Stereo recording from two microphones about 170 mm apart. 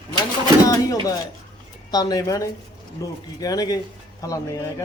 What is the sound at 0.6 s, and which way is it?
Speech, 20° left (ahead or behind).